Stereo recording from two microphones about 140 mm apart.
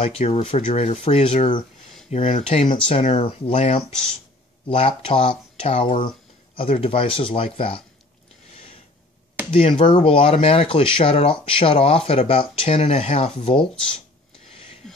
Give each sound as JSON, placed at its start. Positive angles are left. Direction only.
{"t": 0.0, "sound": "speech", "side_deg": 45}
{"t": 2.1, "sound": "speech", "side_deg": 50}
{"t": 2.4, "sound": "speech", "side_deg": 40}
{"t": 9.5, "sound": "speech", "side_deg": 40}